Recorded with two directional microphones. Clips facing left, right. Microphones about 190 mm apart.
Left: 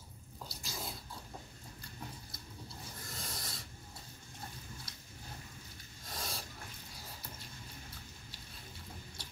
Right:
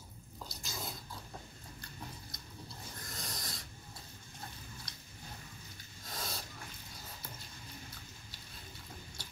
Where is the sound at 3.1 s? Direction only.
5° left (ahead or behind).